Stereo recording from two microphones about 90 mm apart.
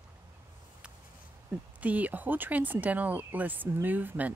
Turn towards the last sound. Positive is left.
turn(degrees=-20)  # may be behind; listen again after turning